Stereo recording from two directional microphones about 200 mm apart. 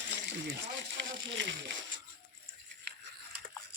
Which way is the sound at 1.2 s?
65° right (ahead or behind).